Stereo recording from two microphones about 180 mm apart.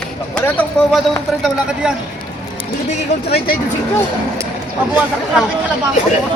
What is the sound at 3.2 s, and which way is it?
Speech, 60° left (ahead or behind).